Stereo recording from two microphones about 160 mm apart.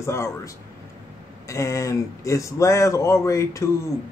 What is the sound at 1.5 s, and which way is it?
Speech, 20° left (ahead or behind).